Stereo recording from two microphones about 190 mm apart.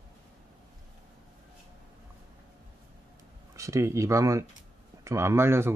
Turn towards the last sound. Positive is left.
turn(degrees=-15)  # may be behind; listen again after turning